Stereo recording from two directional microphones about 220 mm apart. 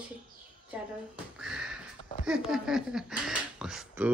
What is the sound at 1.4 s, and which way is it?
Sniff, 5° right (ahead or behind).